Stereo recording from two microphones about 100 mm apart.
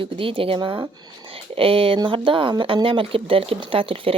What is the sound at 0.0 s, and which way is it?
Speech, 60° right (ahead or behind).